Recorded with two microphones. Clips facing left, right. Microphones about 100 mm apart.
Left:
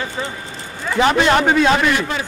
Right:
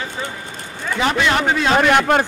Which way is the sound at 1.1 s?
45° left (ahead or behind).